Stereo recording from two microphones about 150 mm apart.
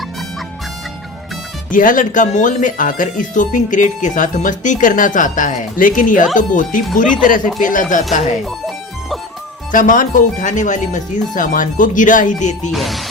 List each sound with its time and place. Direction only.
1.7 s speech: 60° left (ahead or behind)
8.4 s music: centre (ahead or behind)
9.7 s speech: 65° left (ahead or behind)
12.7 s speech: centre (ahead or behind)